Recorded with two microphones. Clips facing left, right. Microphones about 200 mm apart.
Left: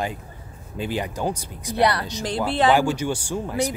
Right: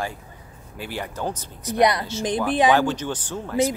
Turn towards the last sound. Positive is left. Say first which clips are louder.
# left 3 dB
turn(degrees=10)  # may be behind; listen again after turning